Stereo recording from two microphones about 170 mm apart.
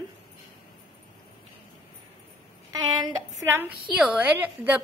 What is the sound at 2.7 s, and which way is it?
Speech, 20° right (ahead or behind).